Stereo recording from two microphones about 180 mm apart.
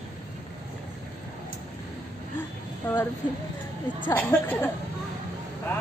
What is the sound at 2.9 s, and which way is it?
Speech, 10° left (ahead or behind).